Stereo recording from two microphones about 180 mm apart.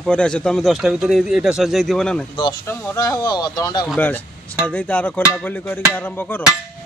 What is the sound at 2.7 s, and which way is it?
Speech, 20° left (ahead or behind).